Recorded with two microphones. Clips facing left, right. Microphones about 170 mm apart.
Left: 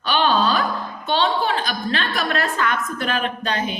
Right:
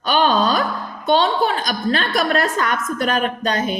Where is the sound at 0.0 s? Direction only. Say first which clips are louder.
Right 2 dB; 45° right (ahead or behind).